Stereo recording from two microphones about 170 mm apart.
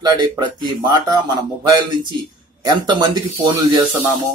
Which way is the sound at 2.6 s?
25° right (ahead or behind).